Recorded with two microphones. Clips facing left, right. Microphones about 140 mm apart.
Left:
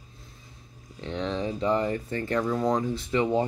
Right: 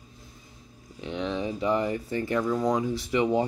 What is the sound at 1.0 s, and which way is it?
Speech, 15° right (ahead or behind).